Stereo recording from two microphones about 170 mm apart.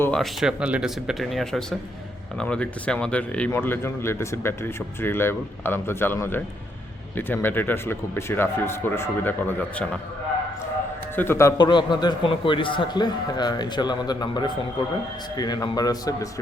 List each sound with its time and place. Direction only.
0.0 s speech: 5° left (ahead or behind)
11.1 s a man's voice: 15° left (ahead or behind)